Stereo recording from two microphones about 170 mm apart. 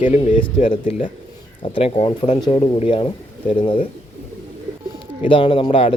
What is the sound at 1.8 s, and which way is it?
Speech, 30° left (ahead or behind).